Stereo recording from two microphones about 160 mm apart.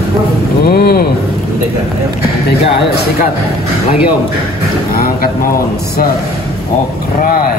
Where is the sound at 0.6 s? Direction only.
75° left (ahead or behind).